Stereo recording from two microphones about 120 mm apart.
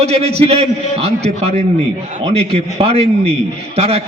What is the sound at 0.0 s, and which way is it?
A man's voice, 60° right (ahead or behind).